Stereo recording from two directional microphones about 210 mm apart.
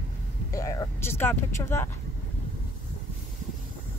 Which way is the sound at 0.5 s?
15° left (ahead or behind).